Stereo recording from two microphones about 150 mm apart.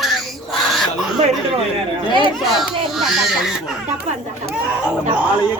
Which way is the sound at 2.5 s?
Centre (ahead or behind).